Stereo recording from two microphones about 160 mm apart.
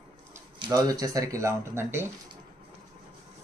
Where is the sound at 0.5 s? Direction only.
25° right (ahead or behind).